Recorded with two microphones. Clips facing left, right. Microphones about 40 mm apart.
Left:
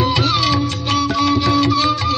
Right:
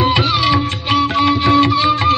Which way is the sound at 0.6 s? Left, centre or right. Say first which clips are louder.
Right 3 dB; right.